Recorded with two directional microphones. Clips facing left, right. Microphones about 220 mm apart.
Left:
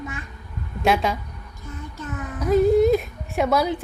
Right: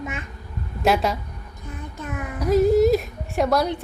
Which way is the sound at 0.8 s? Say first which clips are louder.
Right 1 dB; centre (ahead or behind).